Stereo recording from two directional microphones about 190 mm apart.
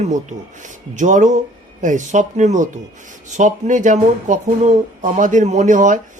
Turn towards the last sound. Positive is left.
turn(degrees=-40)  # may be behind; listen again after turning